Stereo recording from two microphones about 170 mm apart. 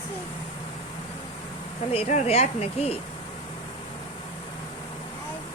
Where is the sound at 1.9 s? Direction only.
35° left (ahead or behind).